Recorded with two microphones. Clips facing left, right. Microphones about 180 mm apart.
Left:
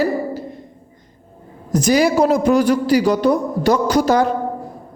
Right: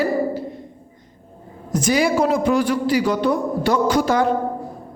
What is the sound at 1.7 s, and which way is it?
A man's voice, 40° left (ahead or behind).